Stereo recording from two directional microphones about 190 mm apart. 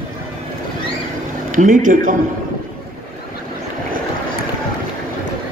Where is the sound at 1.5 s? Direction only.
45° right (ahead or behind).